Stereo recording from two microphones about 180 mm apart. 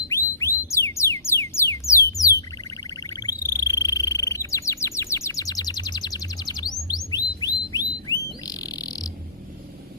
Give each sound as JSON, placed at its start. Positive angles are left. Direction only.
{"t": 0.1, "sound": "music", "side_deg": 15}
{"t": 3.1, "sound": "frog", "side_deg": 20}
{"t": 3.8, "sound": "bird", "side_deg": 20}
{"t": 7.1, "sound": "a sound", "side_deg": 20}
{"t": 8.4, "sound": "bird", "side_deg": 20}